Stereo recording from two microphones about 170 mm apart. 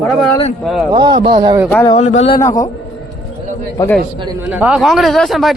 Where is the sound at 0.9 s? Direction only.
25° right (ahead or behind).